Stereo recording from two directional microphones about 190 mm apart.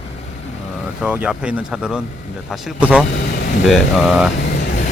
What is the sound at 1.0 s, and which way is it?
Speech, 5° right (ahead or behind).